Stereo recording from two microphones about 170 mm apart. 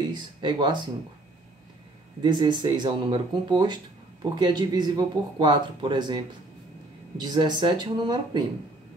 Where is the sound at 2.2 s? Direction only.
25° right (ahead or behind).